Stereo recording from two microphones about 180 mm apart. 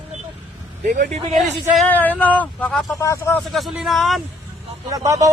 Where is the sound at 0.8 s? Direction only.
45° right (ahead or behind).